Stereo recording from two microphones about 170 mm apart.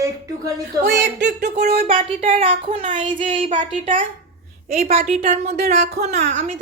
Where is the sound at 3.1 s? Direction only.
50° right (ahead or behind).